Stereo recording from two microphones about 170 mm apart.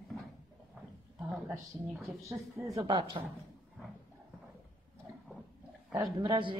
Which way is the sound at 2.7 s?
25° right (ahead or behind).